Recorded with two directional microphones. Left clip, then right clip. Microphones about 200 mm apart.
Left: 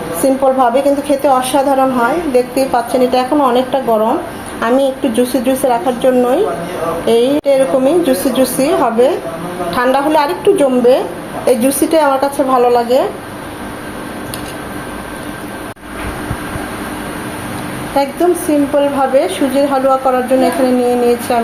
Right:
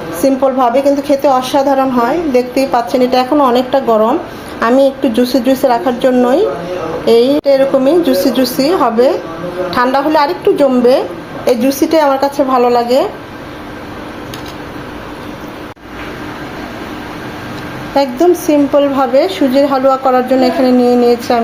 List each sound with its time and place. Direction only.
0.2 s a woman's voice: 20° right (ahead or behind)
17.9 s a woman's voice: 25° right (ahead or behind)